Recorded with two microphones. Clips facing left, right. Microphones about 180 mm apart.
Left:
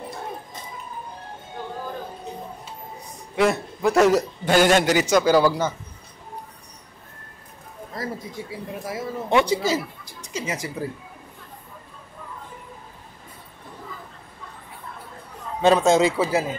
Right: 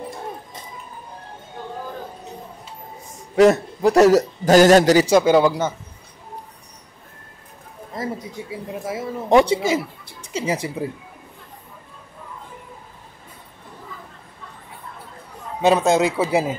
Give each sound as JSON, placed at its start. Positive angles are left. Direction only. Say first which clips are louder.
{"t": 3.1, "sound": "a man's voice", "louder": "right 7 dB", "side_deg": -40}
{"t": 8.0, "sound": "speech", "louder": "right 3 dB", "side_deg": -20}
{"t": 9.3, "sound": "speech", "louder": "right 5 dB", "side_deg": -35}
{"t": 15.6, "sound": "a man's voice", "louder": "even", "side_deg": -5}
{"t": 16.3, "sound": "speech", "louder": "right 3 dB", "side_deg": -15}